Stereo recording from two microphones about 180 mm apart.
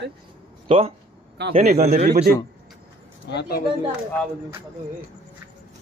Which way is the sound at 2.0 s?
60° right (ahead or behind).